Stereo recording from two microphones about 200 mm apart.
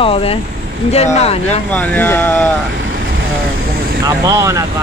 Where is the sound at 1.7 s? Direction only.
5° left (ahead or behind).